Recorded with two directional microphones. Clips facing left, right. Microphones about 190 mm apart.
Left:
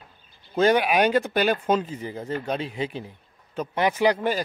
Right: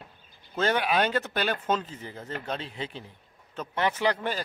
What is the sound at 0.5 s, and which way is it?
Speech, 15° left (ahead or behind).